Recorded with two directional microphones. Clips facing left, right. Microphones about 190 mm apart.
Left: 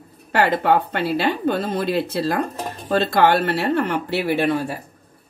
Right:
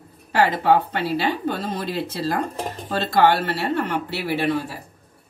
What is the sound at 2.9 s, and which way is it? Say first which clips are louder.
Speech: left 2 dB; 55° left (ahead or behind).